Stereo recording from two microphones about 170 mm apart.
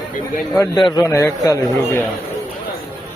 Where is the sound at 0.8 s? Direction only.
25° left (ahead or behind).